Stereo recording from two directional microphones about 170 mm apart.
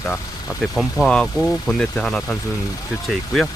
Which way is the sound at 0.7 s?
5° right (ahead or behind).